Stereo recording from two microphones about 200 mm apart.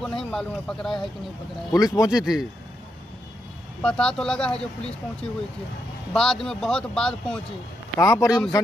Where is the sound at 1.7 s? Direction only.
20° left (ahead or behind).